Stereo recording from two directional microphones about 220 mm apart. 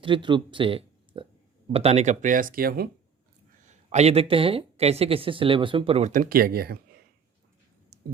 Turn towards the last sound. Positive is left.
turn(degrees=-45)  # may be behind; listen again after turning